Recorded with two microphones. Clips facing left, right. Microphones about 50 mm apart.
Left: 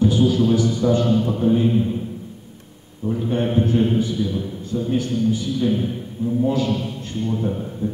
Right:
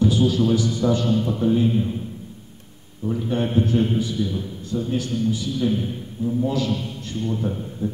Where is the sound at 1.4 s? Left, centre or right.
Left.